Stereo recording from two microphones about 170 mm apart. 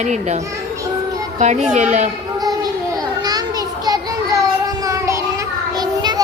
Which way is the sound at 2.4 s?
20° right (ahead or behind).